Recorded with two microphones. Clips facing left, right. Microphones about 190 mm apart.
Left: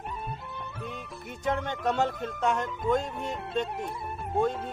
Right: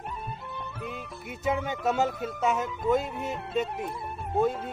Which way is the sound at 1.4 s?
5° right (ahead or behind).